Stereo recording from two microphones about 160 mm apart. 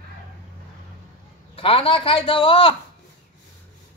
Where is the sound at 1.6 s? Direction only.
35° left (ahead or behind).